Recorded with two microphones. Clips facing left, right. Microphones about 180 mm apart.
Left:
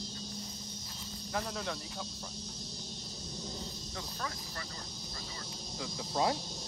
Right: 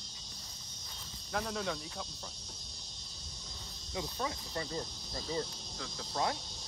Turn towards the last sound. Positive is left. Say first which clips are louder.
# left 3 dB
turn(degrees=15)  # may be behind; listen again after turning